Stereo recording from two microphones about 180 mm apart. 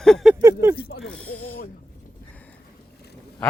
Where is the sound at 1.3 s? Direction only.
55° left (ahead or behind).